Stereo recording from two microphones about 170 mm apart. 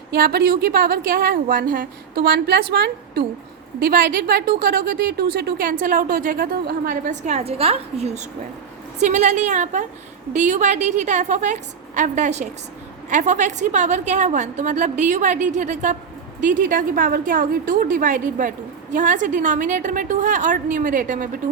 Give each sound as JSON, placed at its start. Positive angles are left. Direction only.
{"t": 0.1, "sound": "a woman's voice", "side_deg": -65}
{"t": 3.8, "sound": "a woman's voice", "side_deg": -55}